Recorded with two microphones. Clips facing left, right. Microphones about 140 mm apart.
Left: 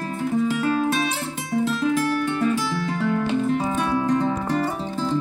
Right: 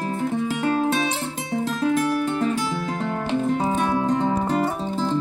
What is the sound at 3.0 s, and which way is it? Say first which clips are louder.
Music: left 4 dB; 40° right (ahead or behind).